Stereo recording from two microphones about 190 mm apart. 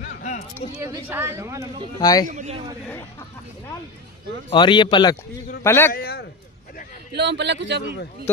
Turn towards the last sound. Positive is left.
turn(degrees=-65)  # may be behind; listen again after turning